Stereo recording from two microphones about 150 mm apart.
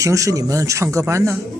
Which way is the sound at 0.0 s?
20° right (ahead or behind).